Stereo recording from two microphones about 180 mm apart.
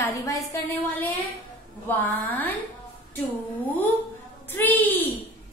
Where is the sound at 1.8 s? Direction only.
10° left (ahead or behind).